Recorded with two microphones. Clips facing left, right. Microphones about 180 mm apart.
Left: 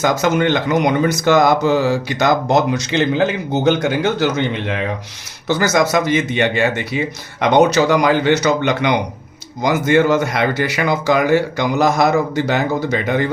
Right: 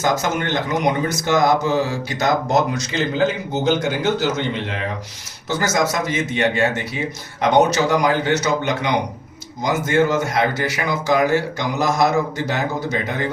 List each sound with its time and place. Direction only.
0.0 s speech: 65° left (ahead or behind)